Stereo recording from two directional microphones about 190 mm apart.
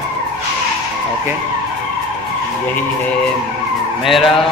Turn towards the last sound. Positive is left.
turn(degrees=0)  # may be behind; listen again after turning